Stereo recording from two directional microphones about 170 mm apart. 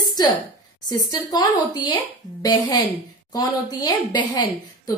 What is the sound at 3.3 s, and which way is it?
A woman's voice, 25° left (ahead or behind).